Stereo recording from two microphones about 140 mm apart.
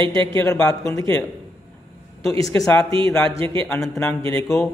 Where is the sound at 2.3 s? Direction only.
25° left (ahead or behind).